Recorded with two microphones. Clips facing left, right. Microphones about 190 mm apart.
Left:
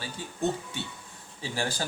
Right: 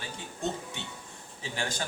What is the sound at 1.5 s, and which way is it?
Speech, 35° left (ahead or behind).